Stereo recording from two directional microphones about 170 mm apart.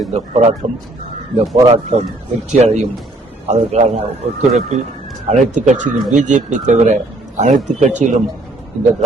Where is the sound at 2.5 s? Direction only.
40° right (ahead or behind).